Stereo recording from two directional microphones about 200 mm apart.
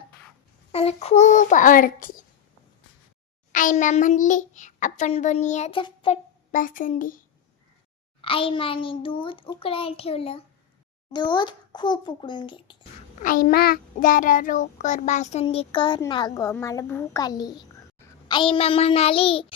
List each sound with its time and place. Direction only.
0.7 s a child's voice: 30° left (ahead or behind)
3.5 s a child's voice: 40° left (ahead or behind)
6.5 s a woman's voice: 40° left (ahead or behind)
8.2 s a child's voice: 25° left (ahead or behind)
13.2 s a child's voice: 45° left (ahead or behind)
15.4 s a child's voice: 25° left (ahead or behind)